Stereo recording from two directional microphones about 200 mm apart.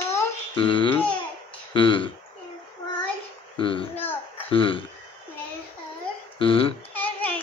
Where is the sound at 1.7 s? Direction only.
25° left (ahead or behind).